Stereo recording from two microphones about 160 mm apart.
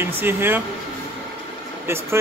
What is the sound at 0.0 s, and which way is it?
Speech, 15° right (ahead or behind).